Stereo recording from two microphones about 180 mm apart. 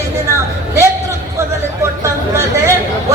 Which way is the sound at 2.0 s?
15° right (ahead or behind).